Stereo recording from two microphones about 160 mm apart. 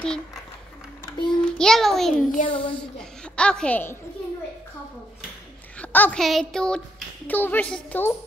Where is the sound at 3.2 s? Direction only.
5° left (ahead or behind).